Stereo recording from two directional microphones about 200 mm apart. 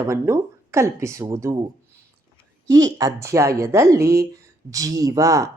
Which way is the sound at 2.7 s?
15° right (ahead or behind).